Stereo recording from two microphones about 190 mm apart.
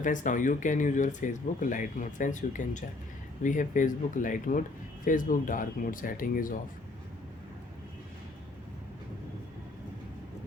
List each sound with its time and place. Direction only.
0.0 s speech: 40° left (ahead or behind)